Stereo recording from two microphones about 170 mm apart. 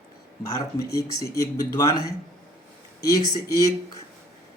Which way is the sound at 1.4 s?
20° left (ahead or behind).